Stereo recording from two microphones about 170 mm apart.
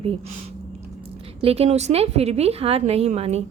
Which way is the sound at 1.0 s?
35° right (ahead or behind).